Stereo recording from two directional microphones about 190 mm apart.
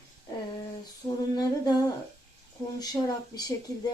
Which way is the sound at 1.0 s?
20° left (ahead or behind).